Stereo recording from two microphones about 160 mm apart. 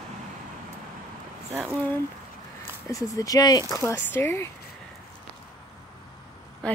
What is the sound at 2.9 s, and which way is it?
Speech, 20° left (ahead or behind).